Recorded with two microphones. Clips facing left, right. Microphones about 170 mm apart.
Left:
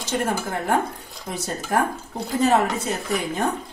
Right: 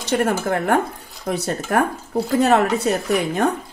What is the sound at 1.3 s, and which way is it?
Speech, 65° right (ahead or behind).